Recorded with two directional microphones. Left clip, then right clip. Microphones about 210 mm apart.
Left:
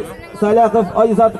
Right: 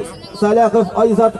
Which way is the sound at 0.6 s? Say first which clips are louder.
Left 1 dB; 5° right (ahead or behind).